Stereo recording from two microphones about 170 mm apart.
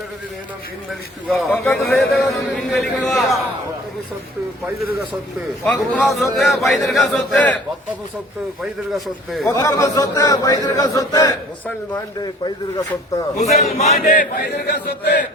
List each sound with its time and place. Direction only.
1.8 s a man's voice: centre (ahead or behind)
5.6 s a man's voice: 10° left (ahead or behind)
8.6 s a man's voice: centre (ahead or behind)
9.5 s speech: 20° left (ahead or behind)
13.4 s a man's voice: 40° left (ahead or behind); by 15.2 s 70° left (ahead or behind)